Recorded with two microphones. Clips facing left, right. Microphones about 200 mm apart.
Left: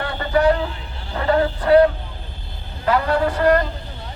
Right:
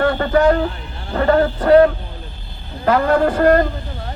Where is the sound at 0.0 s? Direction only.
45° right (ahead or behind).